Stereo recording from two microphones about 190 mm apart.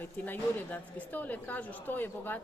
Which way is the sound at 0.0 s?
10° left (ahead or behind).